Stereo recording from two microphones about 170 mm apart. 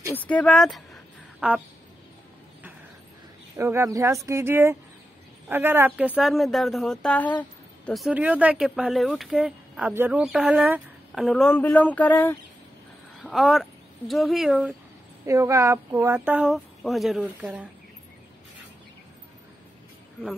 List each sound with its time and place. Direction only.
0.1 s speech: 10° left (ahead or behind); by 1.6 s 5° right (ahead or behind)
3.5 s speech: 15° right (ahead or behind); by 12.4 s 10° left (ahead or behind)
13.2 s speech: centre (ahead or behind)
15.2 s speech: 20° right (ahead or behind)